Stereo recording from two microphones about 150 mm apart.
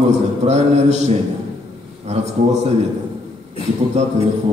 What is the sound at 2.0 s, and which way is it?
Speech, 50° right (ahead or behind).